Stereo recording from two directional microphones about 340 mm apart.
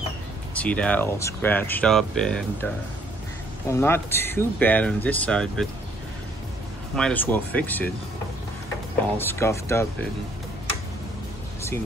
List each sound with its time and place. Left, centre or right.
0.6 s speech: centre
7.0 s speech: centre
9.2 s speech: centre